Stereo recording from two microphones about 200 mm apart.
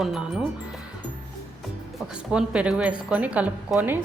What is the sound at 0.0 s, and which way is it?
Speech, centre (ahead or behind).